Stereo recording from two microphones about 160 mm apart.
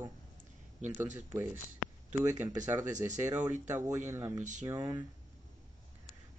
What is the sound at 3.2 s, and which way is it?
Speech, 15° right (ahead or behind).